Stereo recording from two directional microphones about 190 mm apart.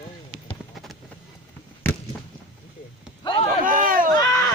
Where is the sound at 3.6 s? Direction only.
45° right (ahead or behind).